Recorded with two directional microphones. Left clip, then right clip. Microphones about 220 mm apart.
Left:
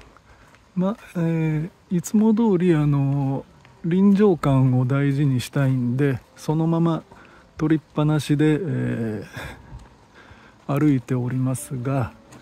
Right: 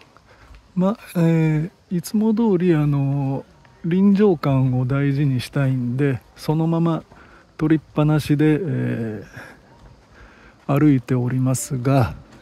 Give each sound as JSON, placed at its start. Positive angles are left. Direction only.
{"t": 0.7, "sound": "speech", "side_deg": -10}
{"t": 10.7, "sound": "speech", "side_deg": -10}